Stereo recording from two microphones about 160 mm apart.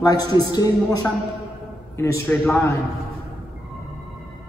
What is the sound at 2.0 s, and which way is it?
Speech, 15° left (ahead or behind).